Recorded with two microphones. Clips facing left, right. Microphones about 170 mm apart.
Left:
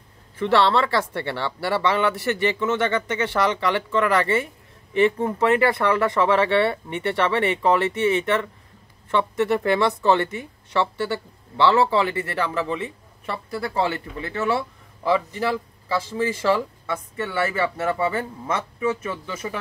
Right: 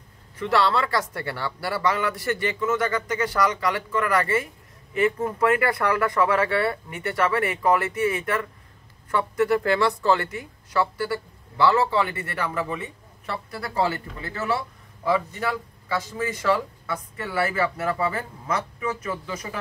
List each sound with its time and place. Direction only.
0.4 s speech: 30° left (ahead or behind)